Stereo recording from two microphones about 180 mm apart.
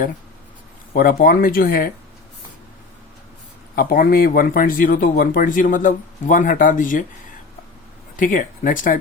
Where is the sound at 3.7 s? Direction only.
55° left (ahead or behind).